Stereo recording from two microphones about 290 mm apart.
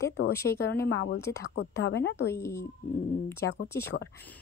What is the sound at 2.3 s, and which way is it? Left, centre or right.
Speech, centre.